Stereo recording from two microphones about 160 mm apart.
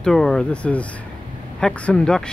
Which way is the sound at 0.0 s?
5° left (ahead or behind).